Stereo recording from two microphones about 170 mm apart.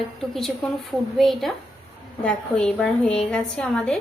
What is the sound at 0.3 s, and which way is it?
A woman's voice, centre (ahead or behind).